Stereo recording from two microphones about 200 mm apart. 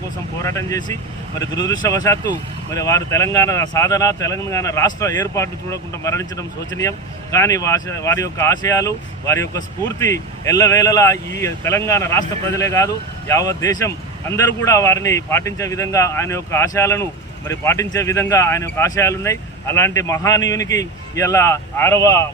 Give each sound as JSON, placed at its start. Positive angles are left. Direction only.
{"t": 0.4, "sound": "speech", "side_deg": 15}